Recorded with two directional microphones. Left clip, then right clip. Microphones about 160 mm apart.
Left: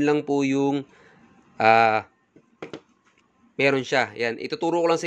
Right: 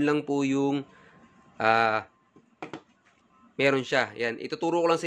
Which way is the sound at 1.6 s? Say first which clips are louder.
Left 6 dB; 30° left (ahead or behind).